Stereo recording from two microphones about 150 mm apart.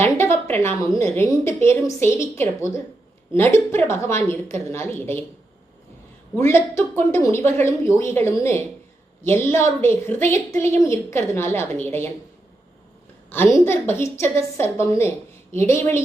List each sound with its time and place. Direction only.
0.0 s a woman's voice: 15° left (ahead or behind)
6.3 s a woman's voice: 15° left (ahead or behind)
13.3 s a woman's voice: 15° left (ahead or behind)